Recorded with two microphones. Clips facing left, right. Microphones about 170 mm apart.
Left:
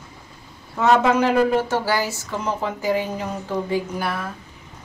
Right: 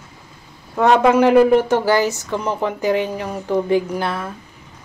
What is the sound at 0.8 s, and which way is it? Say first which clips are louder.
Speech: right 4 dB; 15° right (ahead or behind).